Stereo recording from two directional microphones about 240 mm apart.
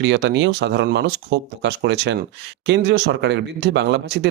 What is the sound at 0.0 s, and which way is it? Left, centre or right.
Speech, right.